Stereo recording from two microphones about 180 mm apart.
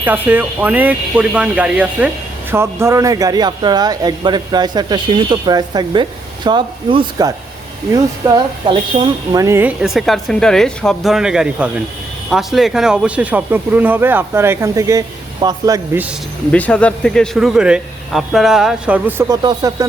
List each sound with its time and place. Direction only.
0.0 s a man's voice: 10° right (ahead or behind)
16.5 s speech: 5° left (ahead or behind); by 19.2 s 10° right (ahead or behind)
19.3 s speech: 20° right (ahead or behind)